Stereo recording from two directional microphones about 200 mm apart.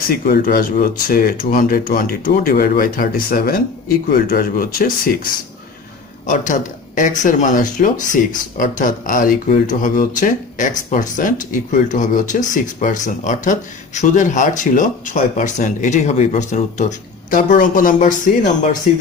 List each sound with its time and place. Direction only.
0.1 s speech: 45° left (ahead or behind)